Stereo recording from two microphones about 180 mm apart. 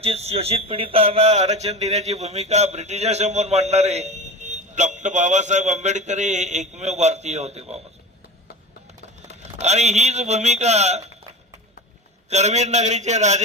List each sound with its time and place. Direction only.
0.0 s speech: 35° right (ahead or behind)
9.3 s speech: 40° right (ahead or behind)
12.3 s speech: 40° right (ahead or behind)